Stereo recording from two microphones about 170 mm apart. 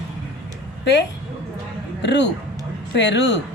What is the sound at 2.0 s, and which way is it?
A woman's voice, 90° left.